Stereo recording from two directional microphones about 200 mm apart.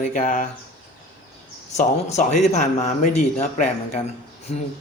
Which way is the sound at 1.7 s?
35° left (ahead or behind).